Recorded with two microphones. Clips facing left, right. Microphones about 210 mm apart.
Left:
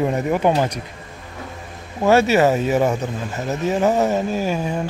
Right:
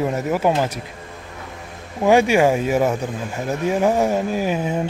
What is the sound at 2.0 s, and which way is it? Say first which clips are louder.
Speech: even; 15° right (ahead or behind).